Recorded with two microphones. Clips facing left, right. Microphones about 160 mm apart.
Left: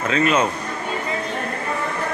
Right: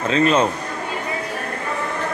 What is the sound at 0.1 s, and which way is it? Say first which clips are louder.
Speech: right 2 dB; 30° right (ahead or behind).